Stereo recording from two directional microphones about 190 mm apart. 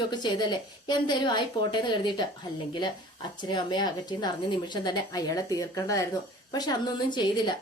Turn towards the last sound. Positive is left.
turn(degrees=25)  # may be behind; listen again after turning